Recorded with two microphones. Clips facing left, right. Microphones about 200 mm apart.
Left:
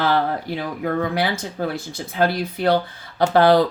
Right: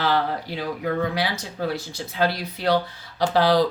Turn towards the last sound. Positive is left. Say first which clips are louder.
# left 4 dB
turn(degrees=55)  # may be behind; listen again after turning